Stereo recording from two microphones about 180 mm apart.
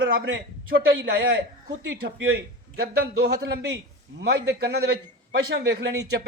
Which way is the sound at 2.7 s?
65° right (ahead or behind).